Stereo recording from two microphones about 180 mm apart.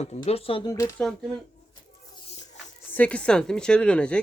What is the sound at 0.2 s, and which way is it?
Speech, 30° left (ahead or behind).